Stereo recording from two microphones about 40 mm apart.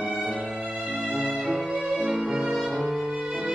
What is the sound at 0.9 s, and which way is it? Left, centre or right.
Music, right.